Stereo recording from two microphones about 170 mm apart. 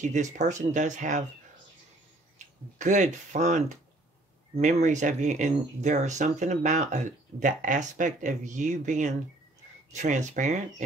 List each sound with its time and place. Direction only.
0.0 s speech: 45° right (ahead or behind)
2.3 s speech: 45° right (ahead or behind)